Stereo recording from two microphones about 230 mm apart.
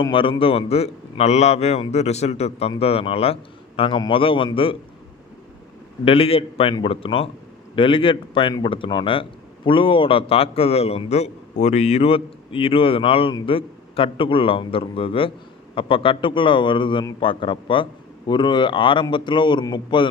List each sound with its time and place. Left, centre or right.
0.0 s speech: left
6.0 s speech: left